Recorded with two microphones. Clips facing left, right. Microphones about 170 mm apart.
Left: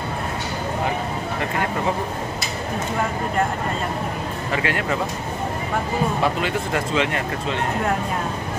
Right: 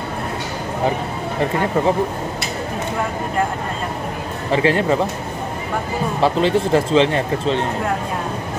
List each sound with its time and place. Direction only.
4.5 s speech: 30° right (ahead or behind)
6.2 s speech: 30° right (ahead or behind)